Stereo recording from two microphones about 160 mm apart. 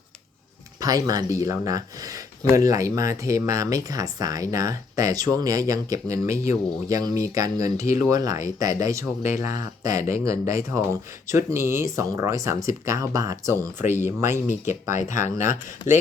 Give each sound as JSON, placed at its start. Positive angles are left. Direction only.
{"t": 0.8, "sound": "speech", "side_deg": -25}